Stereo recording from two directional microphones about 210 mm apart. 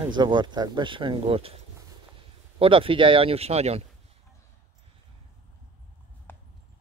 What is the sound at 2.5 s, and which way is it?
Speech, 25° right (ahead or behind).